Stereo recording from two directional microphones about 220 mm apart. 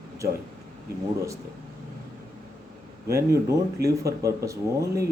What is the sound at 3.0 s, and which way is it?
Speech, 15° right (ahead or behind).